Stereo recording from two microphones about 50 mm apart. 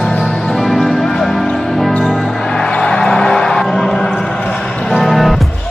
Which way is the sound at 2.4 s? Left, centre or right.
Centre.